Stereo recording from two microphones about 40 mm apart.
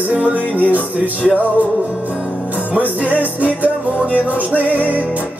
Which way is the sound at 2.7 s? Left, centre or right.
Right.